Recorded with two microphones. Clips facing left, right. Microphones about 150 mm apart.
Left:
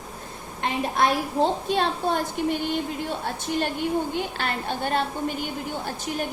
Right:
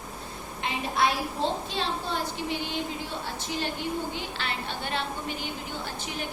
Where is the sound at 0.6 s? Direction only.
50° left (ahead or behind).